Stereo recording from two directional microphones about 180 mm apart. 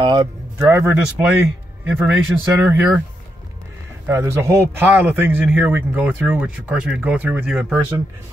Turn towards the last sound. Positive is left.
turn(degrees=-5)  # may be behind; listen again after turning